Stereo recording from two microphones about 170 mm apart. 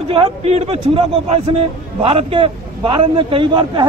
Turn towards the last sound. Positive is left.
turn(degrees=-30)  # may be behind; listen again after turning